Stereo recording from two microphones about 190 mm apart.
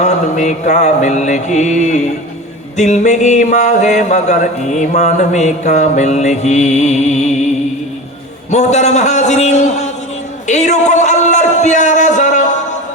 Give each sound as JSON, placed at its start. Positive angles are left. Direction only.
{"t": 0.0, "sound": "mantra", "side_deg": 40}
{"t": 8.4, "sound": "mantra", "side_deg": 35}
{"t": 10.4, "sound": "a sound", "side_deg": 35}